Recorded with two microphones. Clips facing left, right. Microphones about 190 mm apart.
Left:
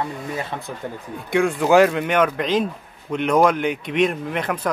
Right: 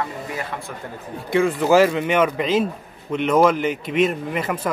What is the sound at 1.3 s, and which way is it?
A man's voice, centre (ahead or behind).